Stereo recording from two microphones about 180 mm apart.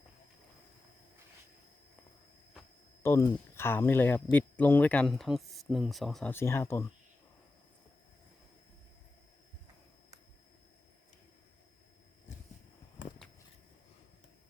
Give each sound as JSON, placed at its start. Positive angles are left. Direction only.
{"t": 3.0, "sound": "speech", "side_deg": 15}
{"t": 6.3, "sound": "speech", "side_deg": 15}